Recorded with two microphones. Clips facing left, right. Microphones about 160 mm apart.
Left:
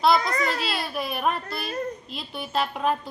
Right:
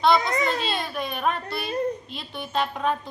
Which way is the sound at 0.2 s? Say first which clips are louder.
Right 1 dB; 20° right (ahead or behind).